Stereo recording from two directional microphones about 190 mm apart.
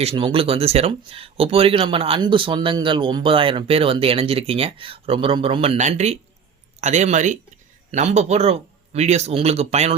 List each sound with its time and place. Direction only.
0.0 s speech: 30° right (ahead or behind)